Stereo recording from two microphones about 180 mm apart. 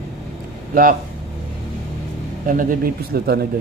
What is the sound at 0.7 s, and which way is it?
Speech, 50° right (ahead or behind).